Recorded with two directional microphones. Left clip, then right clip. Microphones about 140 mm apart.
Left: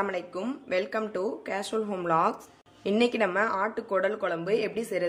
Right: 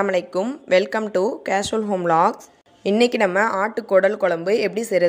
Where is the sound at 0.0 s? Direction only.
55° right (ahead or behind).